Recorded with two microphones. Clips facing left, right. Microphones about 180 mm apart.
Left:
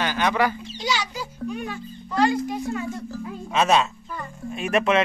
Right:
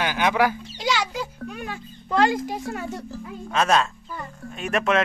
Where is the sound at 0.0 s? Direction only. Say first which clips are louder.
Right 1 dB; 10° right (ahead or behind).